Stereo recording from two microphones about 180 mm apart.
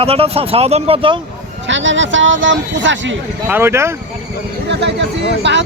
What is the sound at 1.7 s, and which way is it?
Speech, 90° right.